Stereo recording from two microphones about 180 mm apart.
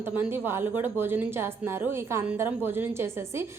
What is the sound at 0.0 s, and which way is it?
A woman's voice, 10° right (ahead or behind).